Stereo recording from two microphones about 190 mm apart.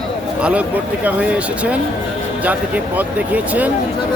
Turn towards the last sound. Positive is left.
turn(degrees=-10)  # may be behind; listen again after turning